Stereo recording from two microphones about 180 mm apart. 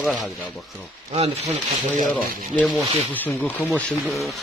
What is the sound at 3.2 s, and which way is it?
Speech, 10° left (ahead or behind).